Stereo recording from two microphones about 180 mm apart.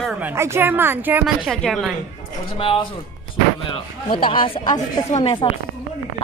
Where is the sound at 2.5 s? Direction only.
30° left (ahead or behind).